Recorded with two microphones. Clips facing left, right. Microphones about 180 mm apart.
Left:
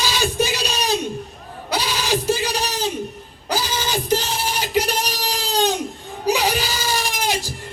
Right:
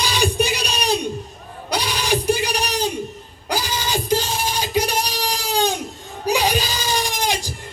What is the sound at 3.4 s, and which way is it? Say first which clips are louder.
Music: left 1 dB; 15° right (ahead or behind).